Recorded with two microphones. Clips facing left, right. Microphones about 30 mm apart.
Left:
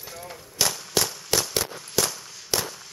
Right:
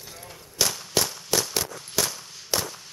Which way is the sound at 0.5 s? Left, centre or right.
Centre.